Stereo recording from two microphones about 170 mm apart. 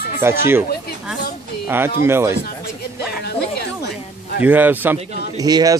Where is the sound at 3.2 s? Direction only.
70° left (ahead or behind).